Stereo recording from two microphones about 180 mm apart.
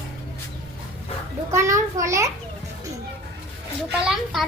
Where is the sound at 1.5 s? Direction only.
15° right (ahead or behind).